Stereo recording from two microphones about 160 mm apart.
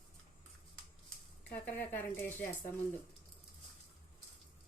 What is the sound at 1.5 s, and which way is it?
Speech, 10° left (ahead or behind).